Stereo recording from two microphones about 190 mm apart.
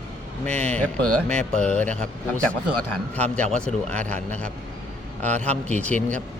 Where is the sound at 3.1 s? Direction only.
5° left (ahead or behind).